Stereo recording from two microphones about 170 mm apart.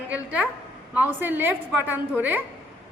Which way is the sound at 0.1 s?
10° right (ahead or behind).